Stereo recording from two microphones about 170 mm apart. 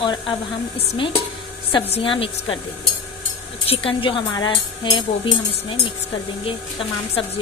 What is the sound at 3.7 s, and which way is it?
Speech, 30° left (ahead or behind).